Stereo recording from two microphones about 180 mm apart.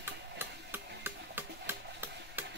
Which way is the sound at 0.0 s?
10° right (ahead or behind).